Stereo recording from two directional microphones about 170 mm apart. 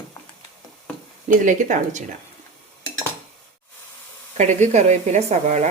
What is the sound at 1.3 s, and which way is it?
Speech, 50° right (ahead or behind).